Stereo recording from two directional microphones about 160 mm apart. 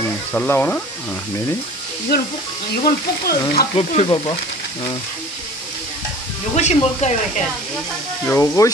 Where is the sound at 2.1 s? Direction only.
75° left (ahead or behind).